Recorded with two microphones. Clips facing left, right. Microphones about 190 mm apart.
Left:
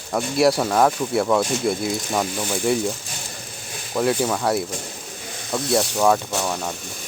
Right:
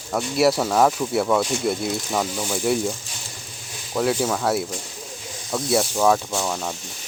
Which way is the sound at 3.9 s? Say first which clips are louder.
Left 1 dB; centre (ahead or behind).